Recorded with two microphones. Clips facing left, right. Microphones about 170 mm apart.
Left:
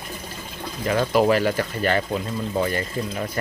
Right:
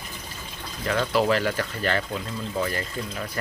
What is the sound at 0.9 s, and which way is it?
Speech, 15° left (ahead or behind).